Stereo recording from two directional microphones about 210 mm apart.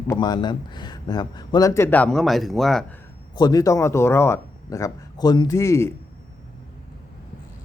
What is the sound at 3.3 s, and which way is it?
A man's voice, 20° left (ahead or behind).